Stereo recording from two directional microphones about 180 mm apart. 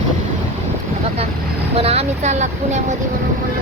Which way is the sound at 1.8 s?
35° right (ahead or behind).